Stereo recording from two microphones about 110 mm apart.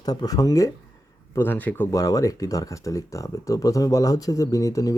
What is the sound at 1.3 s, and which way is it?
Speech, 15° left (ahead or behind).